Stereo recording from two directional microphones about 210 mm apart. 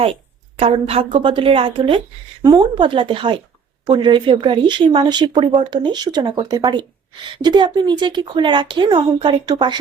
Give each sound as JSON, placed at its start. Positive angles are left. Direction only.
{"t": 0.6, "sound": "speech", "side_deg": -30}